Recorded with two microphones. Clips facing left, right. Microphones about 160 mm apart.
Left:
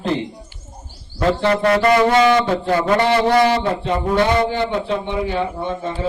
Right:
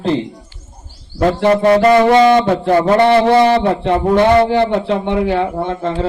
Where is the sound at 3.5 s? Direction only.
65° right (ahead or behind).